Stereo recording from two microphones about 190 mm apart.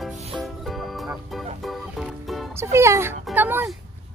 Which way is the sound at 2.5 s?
15° right (ahead or behind).